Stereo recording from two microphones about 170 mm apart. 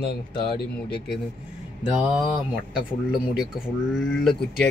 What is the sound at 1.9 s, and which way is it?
Mantra, 10° right (ahead or behind).